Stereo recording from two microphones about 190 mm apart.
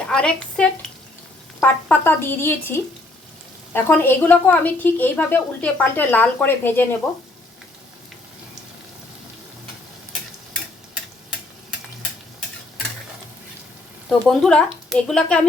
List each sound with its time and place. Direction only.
0.0 s a woman's voice: 5° left (ahead or behind)
14.1 s speech: 5° left (ahead or behind)